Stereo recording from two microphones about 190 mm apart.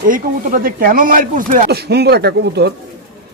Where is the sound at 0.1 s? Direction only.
50° right (ahead or behind).